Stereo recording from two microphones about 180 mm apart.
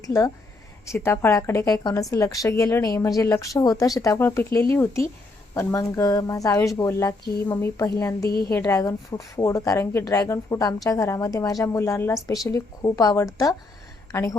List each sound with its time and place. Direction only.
0.0 s a woman's voice: 20° left (ahead or behind)